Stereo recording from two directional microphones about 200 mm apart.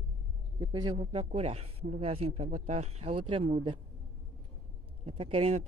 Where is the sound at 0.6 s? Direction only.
20° right (ahead or behind).